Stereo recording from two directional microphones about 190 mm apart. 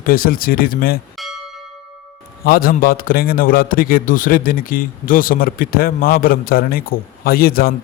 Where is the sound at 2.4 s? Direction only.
50° left (ahead or behind).